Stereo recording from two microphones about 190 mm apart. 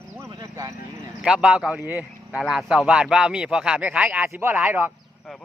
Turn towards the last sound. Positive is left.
turn(degrees=-10)  # may be behind; listen again after turning